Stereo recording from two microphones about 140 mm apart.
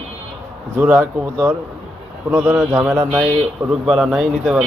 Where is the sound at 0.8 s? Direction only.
15° right (ahead or behind).